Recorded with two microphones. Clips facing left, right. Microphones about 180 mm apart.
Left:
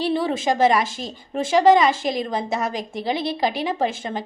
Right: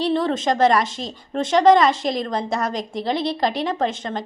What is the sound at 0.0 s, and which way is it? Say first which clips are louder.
A woman's voice: right 1 dB; 5° left (ahead or behind).